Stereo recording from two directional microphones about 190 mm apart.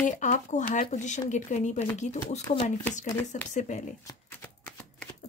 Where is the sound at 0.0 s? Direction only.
40° left (ahead or behind).